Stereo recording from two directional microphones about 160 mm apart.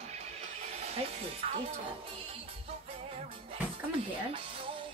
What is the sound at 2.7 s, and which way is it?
Music, 40° right (ahead or behind).